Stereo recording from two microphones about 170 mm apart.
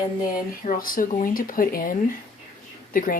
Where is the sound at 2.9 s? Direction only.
55° left (ahead or behind).